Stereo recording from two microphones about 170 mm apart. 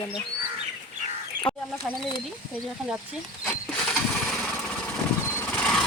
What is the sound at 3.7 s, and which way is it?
Engine, 5° left (ahead or behind).